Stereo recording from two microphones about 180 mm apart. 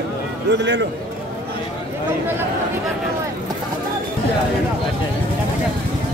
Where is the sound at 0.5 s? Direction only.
75° right (ahead or behind).